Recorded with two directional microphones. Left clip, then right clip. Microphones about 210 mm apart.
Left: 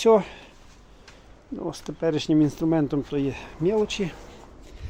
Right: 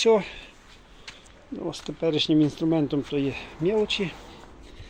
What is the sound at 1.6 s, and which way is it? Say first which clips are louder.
Speech: left 1 dB; 5° left (ahead or behind).